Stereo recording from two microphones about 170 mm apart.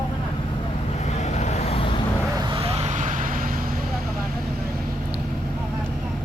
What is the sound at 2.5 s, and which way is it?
Vehicle, 35° right (ahead or behind).